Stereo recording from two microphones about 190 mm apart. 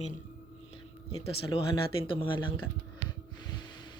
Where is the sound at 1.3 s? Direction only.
25° left (ahead or behind).